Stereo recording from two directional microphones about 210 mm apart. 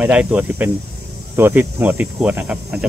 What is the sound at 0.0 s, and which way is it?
Cricket, 5° right (ahead or behind).